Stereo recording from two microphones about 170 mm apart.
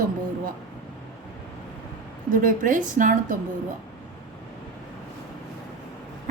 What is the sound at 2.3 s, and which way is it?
A woman's voice, 55° right (ahead or behind).